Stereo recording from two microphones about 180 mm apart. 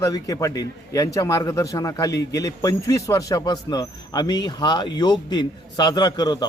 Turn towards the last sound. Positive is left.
turn(degrees=25)  # may be behind; listen again after turning